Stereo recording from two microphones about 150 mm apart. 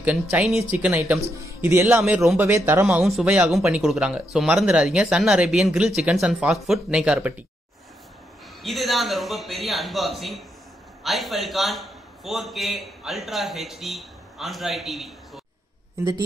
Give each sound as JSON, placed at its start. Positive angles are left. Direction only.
{"t": 0.0, "sound": "speech", "side_deg": -10}
{"t": 2.4, "sound": "speech", "side_deg": -15}
{"t": 3.0, "sound": "speech", "side_deg": 0}
{"t": 8.6, "sound": "a man's voice", "side_deg": 0}
{"t": 16.0, "sound": "speech", "side_deg": -25}